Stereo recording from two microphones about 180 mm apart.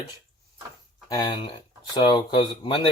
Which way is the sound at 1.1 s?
20° left (ahead or behind).